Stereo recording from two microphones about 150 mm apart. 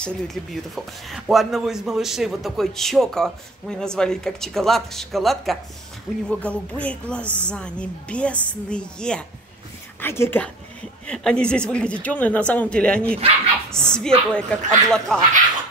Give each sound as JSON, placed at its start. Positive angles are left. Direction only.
{"t": 0.0, "sound": "a woman's voice", "side_deg": 0}
{"t": 7.2, "sound": "a woman's voice", "side_deg": -15}
{"t": 7.5, "sound": "a woman's voice", "side_deg": 5}